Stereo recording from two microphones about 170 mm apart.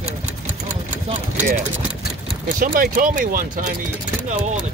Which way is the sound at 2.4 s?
55° right (ahead or behind).